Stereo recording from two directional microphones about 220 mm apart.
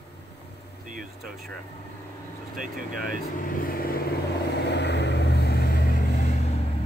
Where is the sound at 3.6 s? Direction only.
40° left (ahead or behind).